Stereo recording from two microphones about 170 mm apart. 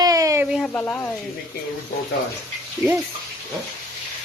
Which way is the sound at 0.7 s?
15° left (ahead or behind).